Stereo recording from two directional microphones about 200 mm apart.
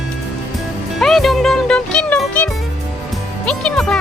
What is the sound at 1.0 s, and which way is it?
Music, centre (ahead or behind).